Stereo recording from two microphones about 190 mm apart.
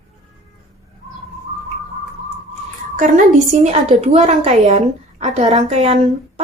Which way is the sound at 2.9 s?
45° right (ahead or behind).